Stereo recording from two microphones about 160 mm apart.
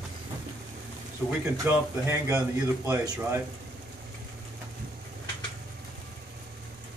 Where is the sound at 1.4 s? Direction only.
15° right (ahead or behind).